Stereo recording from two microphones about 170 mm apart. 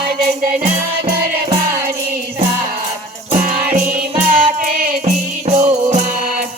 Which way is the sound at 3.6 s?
10° right (ahead or behind).